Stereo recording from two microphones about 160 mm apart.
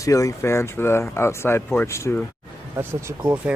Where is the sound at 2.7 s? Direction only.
15° right (ahead or behind).